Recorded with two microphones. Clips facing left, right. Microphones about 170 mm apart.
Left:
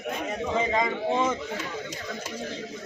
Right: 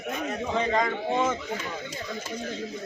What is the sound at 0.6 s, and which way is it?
Speech, 5° left (ahead or behind).